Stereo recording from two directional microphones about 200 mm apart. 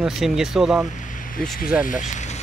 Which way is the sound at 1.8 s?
40° left (ahead or behind).